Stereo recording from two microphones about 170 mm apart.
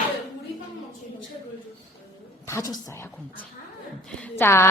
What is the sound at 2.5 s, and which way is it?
Speech, 15° left (ahead or behind).